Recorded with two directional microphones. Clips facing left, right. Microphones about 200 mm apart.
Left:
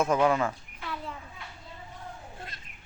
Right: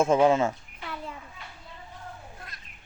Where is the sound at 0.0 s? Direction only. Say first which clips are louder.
Right 4 dB; 25° right (ahead or behind).